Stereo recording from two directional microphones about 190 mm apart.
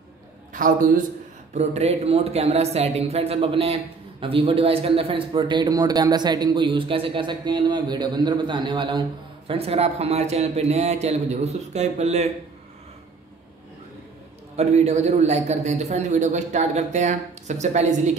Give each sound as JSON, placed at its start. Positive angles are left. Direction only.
{"t": 0.5, "sound": "a man's voice", "side_deg": -45}
{"t": 14.6, "sound": "a man's voice", "side_deg": -35}